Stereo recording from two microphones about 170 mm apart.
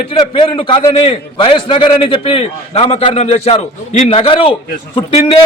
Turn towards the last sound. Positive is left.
turn(degrees=30)  # may be behind; listen again after turning